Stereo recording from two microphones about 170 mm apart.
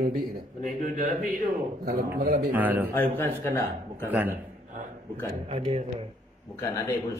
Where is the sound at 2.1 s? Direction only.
60° right (ahead or behind).